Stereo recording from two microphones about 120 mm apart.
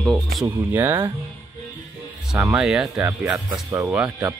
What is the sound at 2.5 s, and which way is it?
Speech, 5° right (ahead or behind).